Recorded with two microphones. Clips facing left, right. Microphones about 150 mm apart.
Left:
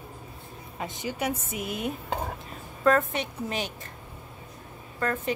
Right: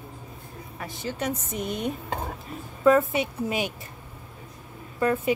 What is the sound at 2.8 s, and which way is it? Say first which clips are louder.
Speech: right 4 dB; 5° right (ahead or behind).